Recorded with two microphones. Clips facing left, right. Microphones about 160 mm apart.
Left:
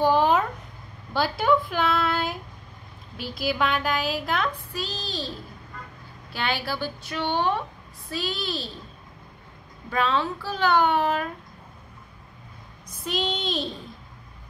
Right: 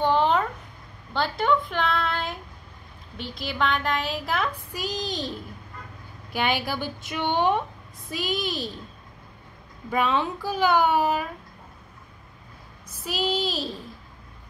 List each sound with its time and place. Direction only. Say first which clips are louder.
0.0 s a sound: left 1 dB; 5° left (ahead or behind)
1.1 s a woman's voice: left 1 dB; 5° left (ahead or behind)
4.7 s a child's voice: right 2 dB; 15° right (ahead or behind)
6.3 s a child's voice: right 3 dB; 15° right (ahead or behind)
9.8 s a child's voice: right 1 dB; 15° right (ahead or behind)
12.8 s a child's voice: even; 5° right (ahead or behind)